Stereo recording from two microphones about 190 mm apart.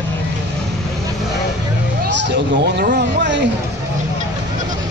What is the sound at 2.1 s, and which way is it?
Speech, 65° right (ahead or behind).